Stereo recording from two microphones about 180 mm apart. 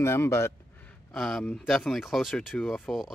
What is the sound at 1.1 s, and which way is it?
Speech, centre (ahead or behind).